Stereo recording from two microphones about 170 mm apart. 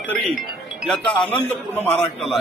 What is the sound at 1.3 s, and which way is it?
A man's voice, 10° left (ahead or behind).